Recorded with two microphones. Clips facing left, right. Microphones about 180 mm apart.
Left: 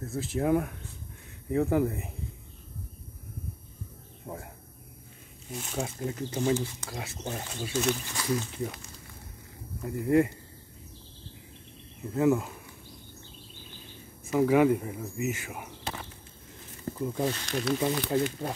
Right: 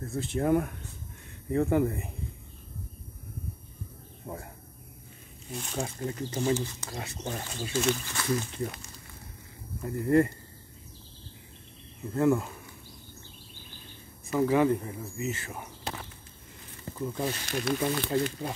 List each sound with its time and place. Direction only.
0.0 s speech: centre (ahead or behind)
5.5 s speech: 5° left (ahead or behind)
8.0 s speech: 15° left (ahead or behind)
8.5 s speech: 5° left (ahead or behind)
9.8 s speech: centre (ahead or behind)
12.1 s speech: 5° left (ahead or behind)
14.3 s speech: 10° left (ahead or behind)
17.2 s speech: 5° right (ahead or behind)
17.7 s speech: 20° left (ahead or behind)
18.1 s speech: 5° left (ahead or behind)